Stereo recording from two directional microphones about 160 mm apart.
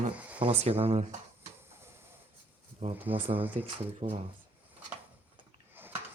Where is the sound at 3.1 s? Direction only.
35° right (ahead or behind).